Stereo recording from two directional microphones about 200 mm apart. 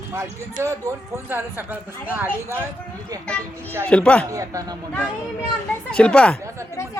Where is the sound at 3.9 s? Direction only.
5° left (ahead or behind).